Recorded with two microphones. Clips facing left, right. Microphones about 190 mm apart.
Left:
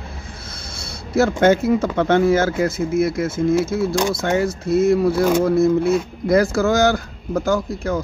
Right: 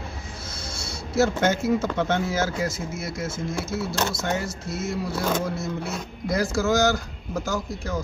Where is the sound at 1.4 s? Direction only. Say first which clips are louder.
Left 7 dB; 55° left (ahead or behind).